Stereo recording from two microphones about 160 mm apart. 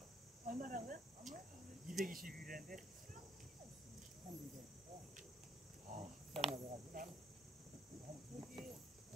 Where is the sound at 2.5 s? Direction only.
60° right (ahead or behind).